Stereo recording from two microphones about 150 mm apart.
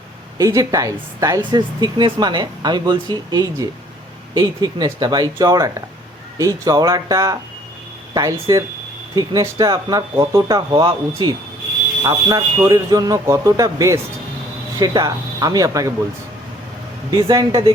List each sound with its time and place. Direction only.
0.3 s speech: 20° right (ahead or behind)
17.1 s speech: 25° right (ahead or behind)